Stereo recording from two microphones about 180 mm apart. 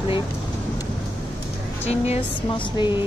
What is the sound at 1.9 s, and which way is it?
A woman's voice, 30° left (ahead or behind).